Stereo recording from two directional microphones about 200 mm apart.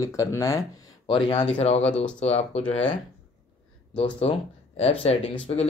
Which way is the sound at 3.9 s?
25° left (ahead or behind).